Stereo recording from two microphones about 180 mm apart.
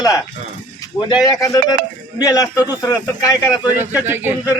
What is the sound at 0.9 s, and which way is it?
A man's voice, 20° left (ahead or behind).